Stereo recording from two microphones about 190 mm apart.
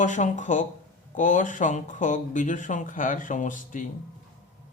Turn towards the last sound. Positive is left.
turn(degrees=45)  # may be behind; listen again after turning